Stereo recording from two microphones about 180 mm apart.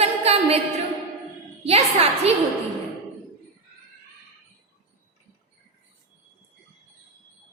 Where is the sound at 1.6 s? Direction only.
35° right (ahead or behind).